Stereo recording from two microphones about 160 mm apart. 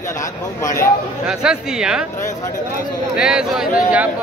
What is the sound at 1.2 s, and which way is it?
Speech, 5° right (ahead or behind).